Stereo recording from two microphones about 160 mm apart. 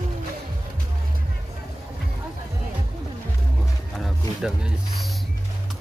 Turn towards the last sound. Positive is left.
turn(degrees=0)  # may be behind; listen again after turning